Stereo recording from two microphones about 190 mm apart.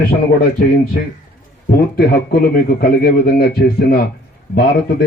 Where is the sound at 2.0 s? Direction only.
50° left (ahead or behind).